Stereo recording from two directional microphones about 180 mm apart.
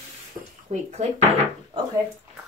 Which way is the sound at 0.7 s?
40° right (ahead or behind).